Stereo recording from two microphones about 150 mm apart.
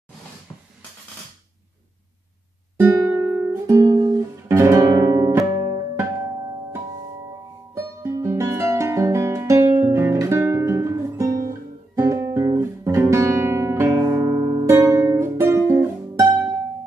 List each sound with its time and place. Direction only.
2.9 s music: 15° right (ahead or behind)
7.7 s guitar: 20° right (ahead or behind)